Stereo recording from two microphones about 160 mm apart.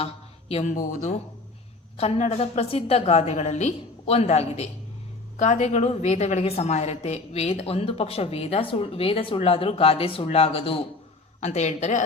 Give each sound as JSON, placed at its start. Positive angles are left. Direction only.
{"t": 0.0, "sound": "a sound", "side_deg": 40}
{"t": 0.7, "sound": "speech", "side_deg": 60}
{"t": 2.0, "sound": "a woman's voice", "side_deg": 40}